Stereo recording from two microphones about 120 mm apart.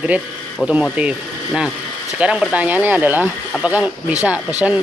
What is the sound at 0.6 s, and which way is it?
Speech, 5° right (ahead or behind).